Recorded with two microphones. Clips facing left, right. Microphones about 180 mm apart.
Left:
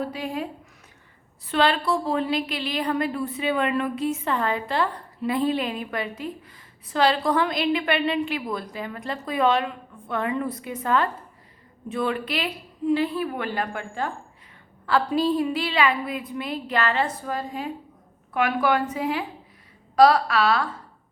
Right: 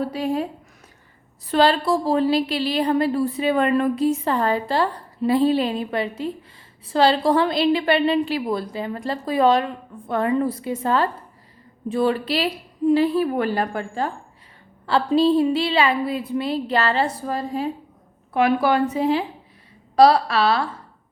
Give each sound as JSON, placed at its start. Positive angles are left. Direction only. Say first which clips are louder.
{"t": 0.1, "sound": "a woman's voice", "louder": "right 6 dB", "side_deg": -35}
{"t": 1.5, "sound": "a woman's voice", "louder": "right 4 dB", "side_deg": -35}